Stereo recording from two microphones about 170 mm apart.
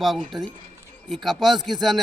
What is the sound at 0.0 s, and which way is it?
Speech, centre (ahead or behind).